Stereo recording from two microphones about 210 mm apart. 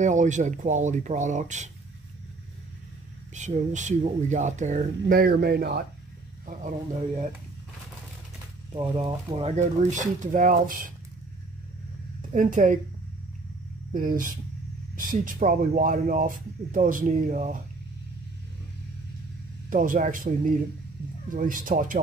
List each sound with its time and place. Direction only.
0.0 s speech: 35° right (ahead or behind)
3.3 s speech: 35° right (ahead or behind)
6.4 s speech: 35° right (ahead or behind)
8.7 s speech: 25° right (ahead or behind); by 10.9 s 40° right (ahead or behind)
12.2 s a woman's voice: 40° right (ahead or behind)
13.9 s speech: 40° right (ahead or behind)
19.7 s speech: 40° right (ahead or behind)